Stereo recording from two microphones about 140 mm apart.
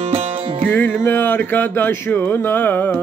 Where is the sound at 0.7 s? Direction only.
15° left (ahead or behind).